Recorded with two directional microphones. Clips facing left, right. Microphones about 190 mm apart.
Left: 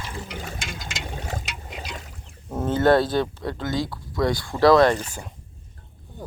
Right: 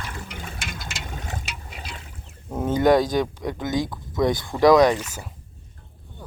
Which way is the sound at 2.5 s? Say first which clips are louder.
Even; 10° right (ahead or behind).